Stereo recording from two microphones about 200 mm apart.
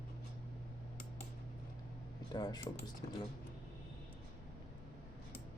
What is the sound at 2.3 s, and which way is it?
Speech, 20° left (ahead or behind).